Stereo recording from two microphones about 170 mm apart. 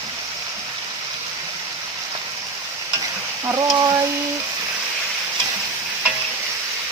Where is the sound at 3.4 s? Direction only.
20° right (ahead or behind).